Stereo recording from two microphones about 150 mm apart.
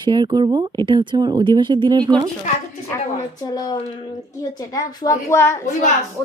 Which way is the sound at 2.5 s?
55° left (ahead or behind).